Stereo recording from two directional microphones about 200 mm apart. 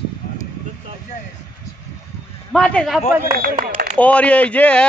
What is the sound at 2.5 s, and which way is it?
Speech, 5° left (ahead or behind).